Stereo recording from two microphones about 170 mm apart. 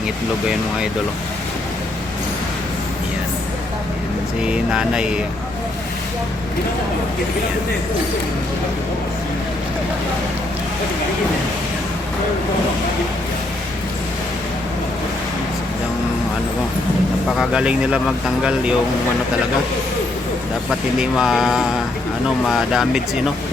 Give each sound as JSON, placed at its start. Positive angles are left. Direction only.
{"t": 4.4, "sound": "speech", "side_deg": -5}
{"t": 17.2, "sound": "speech", "side_deg": 0}
{"t": 20.7, "sound": "speech", "side_deg": 0}